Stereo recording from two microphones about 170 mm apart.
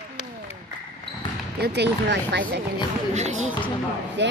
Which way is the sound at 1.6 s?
80° right.